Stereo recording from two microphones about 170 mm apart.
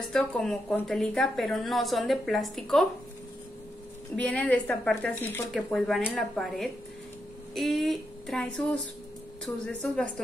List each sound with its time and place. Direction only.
0.1 s a woman's voice: 5° left (ahead or behind)
4.2 s a woman's voice: 5° left (ahead or behind)
9.7 s a woman's voice: 5° left (ahead or behind)